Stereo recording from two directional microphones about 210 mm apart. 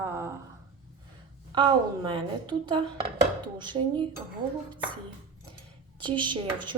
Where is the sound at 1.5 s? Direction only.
20° right (ahead or behind).